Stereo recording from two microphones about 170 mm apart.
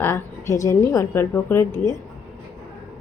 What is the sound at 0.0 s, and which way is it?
A woman's voice, 15° left (ahead or behind).